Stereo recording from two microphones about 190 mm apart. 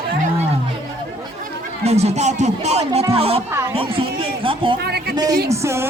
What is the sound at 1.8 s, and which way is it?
Speech, 35° right (ahead or behind).